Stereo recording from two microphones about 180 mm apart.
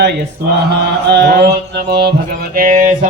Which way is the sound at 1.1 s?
65° right (ahead or behind).